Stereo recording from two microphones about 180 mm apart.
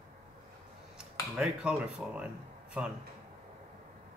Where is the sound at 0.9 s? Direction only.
5° right (ahead or behind).